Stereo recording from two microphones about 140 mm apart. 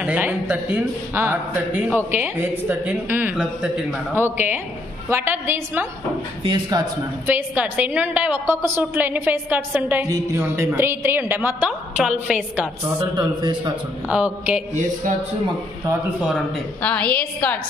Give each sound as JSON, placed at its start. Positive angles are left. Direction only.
{"t": 0.0, "sound": "a woman's voice", "side_deg": -10}
{"t": 6.4, "sound": "a man's voice", "side_deg": -35}
{"t": 7.2, "sound": "a woman's voice", "side_deg": -10}
{"t": 13.0, "sound": "a man's voice", "side_deg": -30}
{"t": 14.0, "sound": "a woman's voice", "side_deg": -10}
{"t": 16.2, "sound": "a man's voice", "side_deg": -5}
{"t": 16.8, "sound": "a woman's voice", "side_deg": 10}